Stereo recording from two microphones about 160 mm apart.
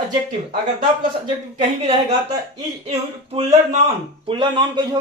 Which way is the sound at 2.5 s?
40° right (ahead or behind).